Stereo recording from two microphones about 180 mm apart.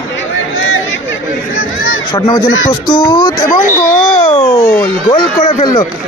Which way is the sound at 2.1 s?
20° left (ahead or behind).